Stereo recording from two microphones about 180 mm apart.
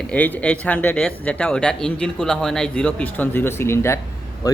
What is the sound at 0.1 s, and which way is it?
Speech, 5° left (ahead or behind).